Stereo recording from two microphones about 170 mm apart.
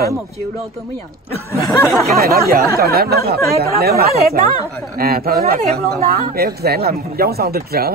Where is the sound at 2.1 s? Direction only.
65° right (ahead or behind).